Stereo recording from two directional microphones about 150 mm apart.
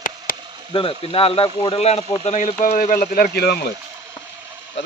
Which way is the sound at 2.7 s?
70° left (ahead or behind).